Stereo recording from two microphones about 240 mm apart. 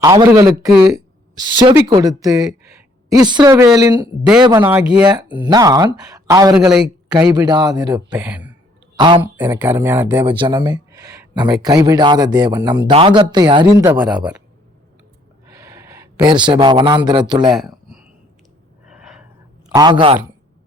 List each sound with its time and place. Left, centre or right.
0.0 s a woman's voice: centre
5.0 s speech: centre
6.5 s a man's voice: centre
7.3 s speech: centre
8.1 s speech: centre
9.0 s speech: centre
9.4 s speech: centre
10.2 s speech: centre
15.4 s speech: centre
17.5 s a sound: centre
19.7 s speech: centre